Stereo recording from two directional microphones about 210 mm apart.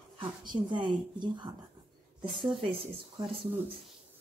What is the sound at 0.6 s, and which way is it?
Speech, 20° right (ahead or behind).